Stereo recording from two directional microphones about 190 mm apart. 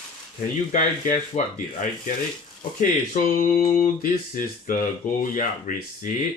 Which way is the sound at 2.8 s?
45° left (ahead or behind).